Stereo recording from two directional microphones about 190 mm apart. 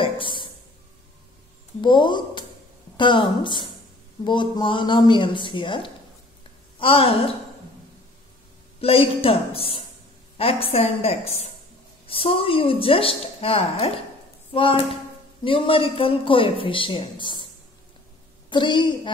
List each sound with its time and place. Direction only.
0.0 s a sound: 25° left (ahead or behind)
1.8 s speech: 25° left (ahead or behind)
8.8 s a woman's voice: 30° left (ahead or behind)
18.5 s speech: 25° left (ahead or behind)